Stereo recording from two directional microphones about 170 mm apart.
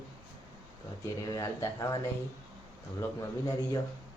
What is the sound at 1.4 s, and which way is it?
Speech, 20° left (ahead or behind).